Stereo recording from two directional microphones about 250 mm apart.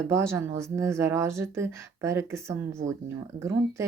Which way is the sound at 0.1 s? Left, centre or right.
Centre.